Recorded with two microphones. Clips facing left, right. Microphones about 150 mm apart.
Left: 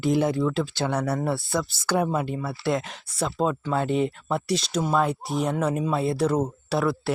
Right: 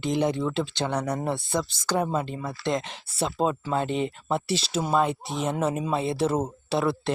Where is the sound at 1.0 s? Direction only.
15° right (ahead or behind).